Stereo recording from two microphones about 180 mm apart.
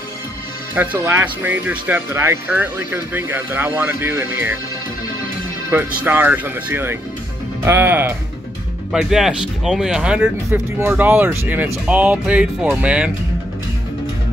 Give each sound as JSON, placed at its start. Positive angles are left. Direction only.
{"t": 0.7, "sound": "speech", "side_deg": -10}
{"t": 5.7, "sound": "speech", "side_deg": -10}